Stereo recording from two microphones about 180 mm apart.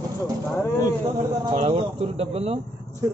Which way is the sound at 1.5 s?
30° right (ahead or behind).